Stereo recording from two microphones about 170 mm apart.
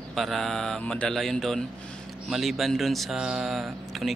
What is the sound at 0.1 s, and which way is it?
Speech, centre (ahead or behind).